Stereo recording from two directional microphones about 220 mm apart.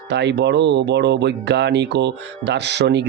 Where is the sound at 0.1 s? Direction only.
50° right (ahead or behind).